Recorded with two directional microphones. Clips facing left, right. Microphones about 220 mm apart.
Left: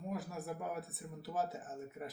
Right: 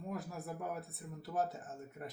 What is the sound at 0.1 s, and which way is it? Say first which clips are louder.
Speech: left 1 dB; centre (ahead or behind).